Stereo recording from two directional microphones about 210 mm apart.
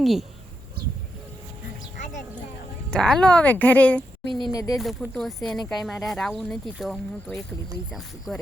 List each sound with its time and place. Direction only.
0.0 s speech: centre (ahead or behind)
2.9 s speech: 5° left (ahead or behind)
4.4 s speech: 20° left (ahead or behind)
4.8 s speech: centre (ahead or behind)